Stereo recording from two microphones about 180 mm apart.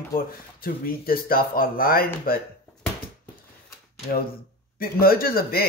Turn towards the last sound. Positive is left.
turn(degrees=55)  # may be behind; listen again after turning